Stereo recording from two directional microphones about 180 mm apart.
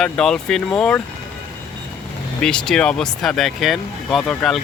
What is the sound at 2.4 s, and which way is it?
Speech, 5° left (ahead or behind).